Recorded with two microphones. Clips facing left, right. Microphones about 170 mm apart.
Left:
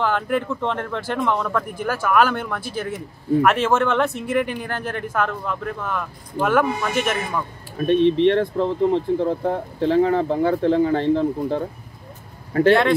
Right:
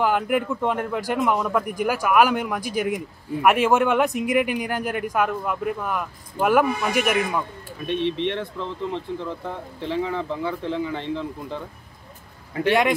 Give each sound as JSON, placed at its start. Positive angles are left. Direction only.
{"t": 0.0, "sound": "speech", "side_deg": -10}
{"t": 7.7, "sound": "speech", "side_deg": 50}